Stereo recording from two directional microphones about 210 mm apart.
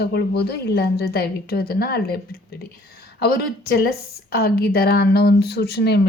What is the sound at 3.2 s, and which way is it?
A woman's voice, 50° left (ahead or behind).